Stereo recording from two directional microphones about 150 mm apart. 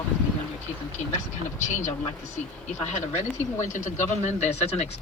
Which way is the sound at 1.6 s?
50° left (ahead or behind).